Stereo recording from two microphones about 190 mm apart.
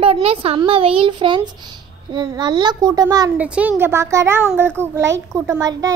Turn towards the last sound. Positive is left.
turn(degrees=-20)  # may be behind; listen again after turning